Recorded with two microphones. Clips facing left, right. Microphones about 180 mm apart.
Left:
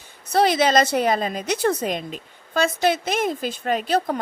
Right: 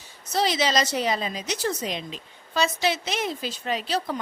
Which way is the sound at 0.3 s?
55° left (ahead or behind).